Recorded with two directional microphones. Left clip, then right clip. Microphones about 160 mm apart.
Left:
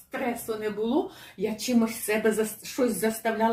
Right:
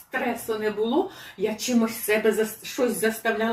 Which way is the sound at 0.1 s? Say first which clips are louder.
Right 4 dB; 15° left (ahead or behind).